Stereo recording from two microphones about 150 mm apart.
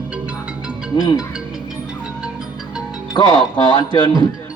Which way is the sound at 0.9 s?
30° left (ahead or behind).